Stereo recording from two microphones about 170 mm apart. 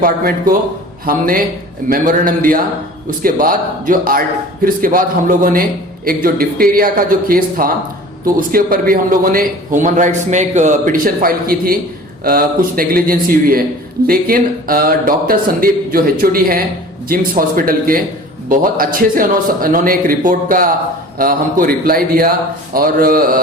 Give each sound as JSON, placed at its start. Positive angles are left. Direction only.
{"t": 0.0, "sound": "a man's voice", "side_deg": -55}